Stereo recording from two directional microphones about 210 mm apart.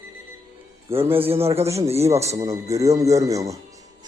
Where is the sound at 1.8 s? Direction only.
15° right (ahead or behind).